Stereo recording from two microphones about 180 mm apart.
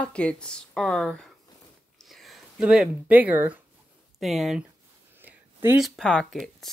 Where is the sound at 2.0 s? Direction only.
Centre (ahead or behind).